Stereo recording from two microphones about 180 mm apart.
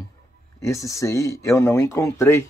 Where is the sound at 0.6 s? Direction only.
15° left (ahead or behind).